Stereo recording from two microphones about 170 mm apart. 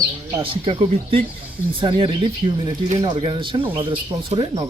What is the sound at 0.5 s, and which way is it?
Speech, 30° right (ahead or behind).